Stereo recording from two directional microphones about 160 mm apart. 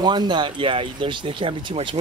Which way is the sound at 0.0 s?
25° right (ahead or behind).